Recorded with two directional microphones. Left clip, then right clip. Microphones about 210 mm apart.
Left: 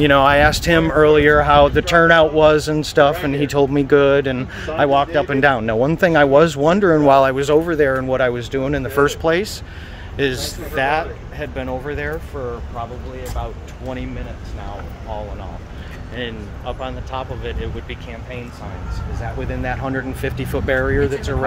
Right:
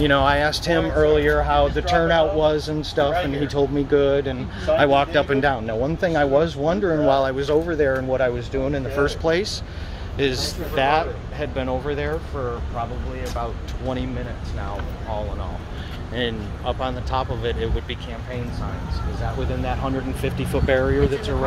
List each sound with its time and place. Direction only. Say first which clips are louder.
0.0 s speech: left 6 dB; 35° left (ahead or behind)
4.7 s speech: left 2 dB; 20° left (ahead or behind)
5.4 s speech: left 6 dB; 50° left (ahead or behind)
9.2 s speech: left 3 dB; 35° left (ahead or behind)
10.7 s speech: left 1 dB; 10° left (ahead or behind)
16.2 s speech: right 2 dB; 15° right (ahead or behind)
19.6 s speech: left 4 dB; 25° left (ahead or behind)